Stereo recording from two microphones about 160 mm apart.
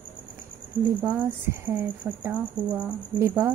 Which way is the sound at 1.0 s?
10° right (ahead or behind).